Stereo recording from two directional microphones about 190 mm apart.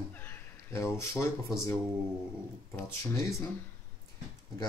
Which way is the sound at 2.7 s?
15° left (ahead or behind).